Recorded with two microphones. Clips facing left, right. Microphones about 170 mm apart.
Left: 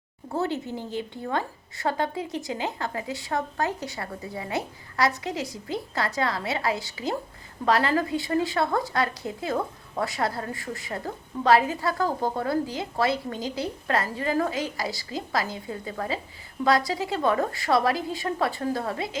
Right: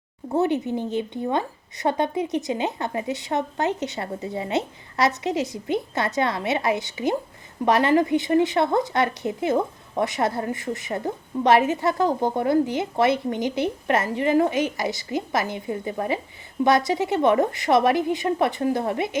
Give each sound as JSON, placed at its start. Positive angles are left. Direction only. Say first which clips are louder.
{"t": 0.3, "sound": "a woman's voice", "louder": "right 6 dB", "side_deg": -20}